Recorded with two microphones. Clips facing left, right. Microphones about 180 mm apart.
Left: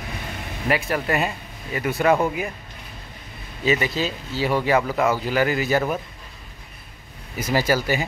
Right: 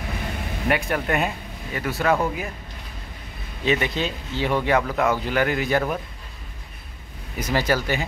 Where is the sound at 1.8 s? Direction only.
15° left (ahead or behind).